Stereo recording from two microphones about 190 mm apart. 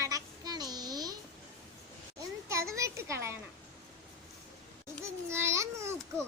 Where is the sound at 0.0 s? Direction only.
20° right (ahead or behind).